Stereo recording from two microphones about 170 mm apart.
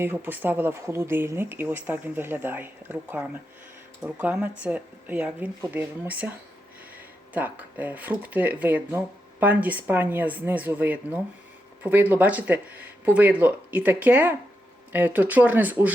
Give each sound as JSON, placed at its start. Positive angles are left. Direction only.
{"t": 0.0, "sound": "speech", "side_deg": -10}
{"t": 7.3, "sound": "speech", "side_deg": -10}